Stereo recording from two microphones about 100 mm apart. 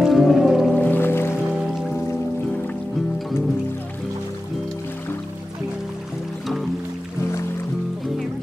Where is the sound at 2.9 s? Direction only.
Centre (ahead or behind).